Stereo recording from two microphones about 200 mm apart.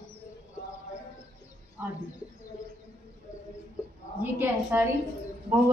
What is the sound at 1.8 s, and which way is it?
Speech, 10° right (ahead or behind).